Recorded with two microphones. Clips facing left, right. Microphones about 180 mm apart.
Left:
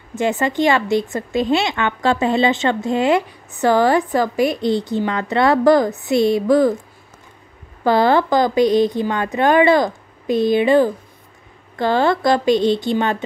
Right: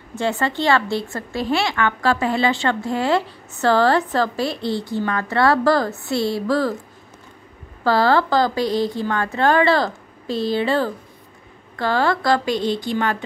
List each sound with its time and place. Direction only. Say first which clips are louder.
0.2 s speech: left 4 dB; 15° left (ahead or behind)
7.8 s a woman's voice: left 2 dB; 20° left (ahead or behind)